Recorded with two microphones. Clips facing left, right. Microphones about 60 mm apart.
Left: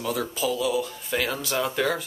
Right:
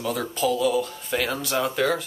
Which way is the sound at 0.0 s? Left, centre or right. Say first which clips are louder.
Right 2 dB; centre.